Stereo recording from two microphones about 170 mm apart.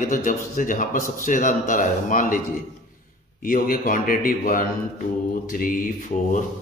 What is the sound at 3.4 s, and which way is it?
A man's voice, 55° left (ahead or behind).